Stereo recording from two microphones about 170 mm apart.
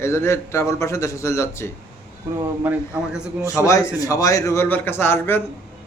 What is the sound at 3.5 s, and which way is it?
A man's voice, 20° left (ahead or behind).